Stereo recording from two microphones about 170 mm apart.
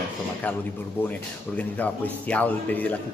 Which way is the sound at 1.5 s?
10° left (ahead or behind).